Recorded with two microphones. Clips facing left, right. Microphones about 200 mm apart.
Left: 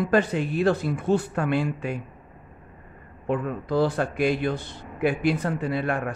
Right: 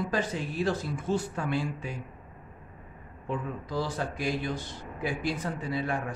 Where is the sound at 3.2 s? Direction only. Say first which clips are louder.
Left 7 dB; 60° left (ahead or behind).